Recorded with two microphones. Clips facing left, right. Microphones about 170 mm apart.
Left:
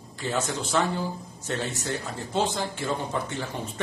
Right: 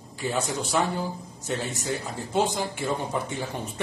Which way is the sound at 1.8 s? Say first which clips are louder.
Right 1 dB; 15° right (ahead or behind).